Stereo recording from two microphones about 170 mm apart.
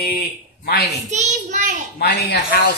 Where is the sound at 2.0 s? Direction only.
75° left (ahead or behind).